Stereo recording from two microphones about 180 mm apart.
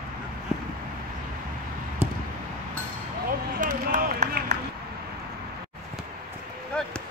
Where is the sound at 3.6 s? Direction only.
45° right (ahead or behind).